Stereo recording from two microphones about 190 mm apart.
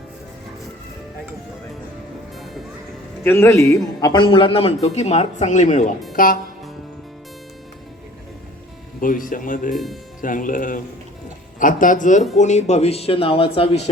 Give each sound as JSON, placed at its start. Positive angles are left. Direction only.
{"t": 3.2, "sound": "a man's voice", "side_deg": 15}
{"t": 9.0, "sound": "speech", "side_deg": 45}
{"t": 9.7, "sound": "speech", "side_deg": 0}
{"t": 10.2, "sound": "a man's voice", "side_deg": 45}